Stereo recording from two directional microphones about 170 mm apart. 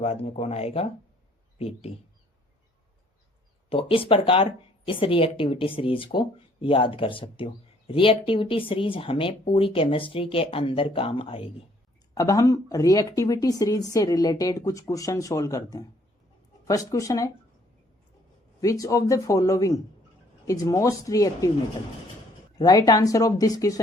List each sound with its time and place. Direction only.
0.0 s speech: 40° left (ahead or behind)
3.7 s speech: 35° left (ahead or behind)
12.1 s speech: 20° left (ahead or behind)
18.6 s speech: 20° left (ahead or behind)
22.5 s speech: 25° left (ahead or behind)